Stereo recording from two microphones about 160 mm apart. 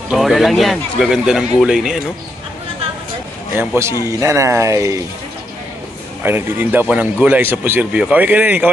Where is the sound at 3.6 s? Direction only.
15° right (ahead or behind).